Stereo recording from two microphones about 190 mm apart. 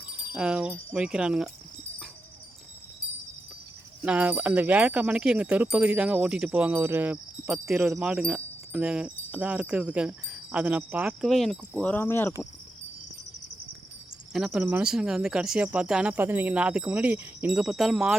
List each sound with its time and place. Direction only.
0.3 s speech: 5° right (ahead or behind)
4.0 s speech: 5° right (ahead or behind)
11.9 s speech: 10° left (ahead or behind)
14.3 s speech: centre (ahead or behind)